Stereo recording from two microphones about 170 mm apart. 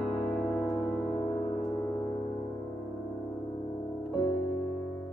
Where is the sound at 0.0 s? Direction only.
Centre (ahead or behind).